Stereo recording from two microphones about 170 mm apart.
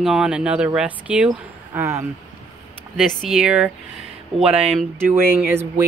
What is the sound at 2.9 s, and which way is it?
Speech, centre (ahead or behind).